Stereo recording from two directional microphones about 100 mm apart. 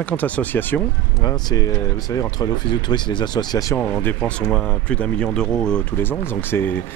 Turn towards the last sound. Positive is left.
turn(degrees=20)  # may be behind; listen again after turning